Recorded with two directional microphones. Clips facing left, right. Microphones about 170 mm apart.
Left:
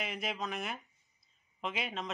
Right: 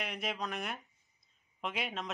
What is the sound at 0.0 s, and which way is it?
Speech, centre (ahead or behind).